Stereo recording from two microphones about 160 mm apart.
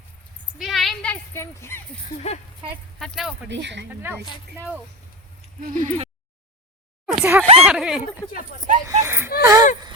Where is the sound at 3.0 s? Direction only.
Centre (ahead or behind).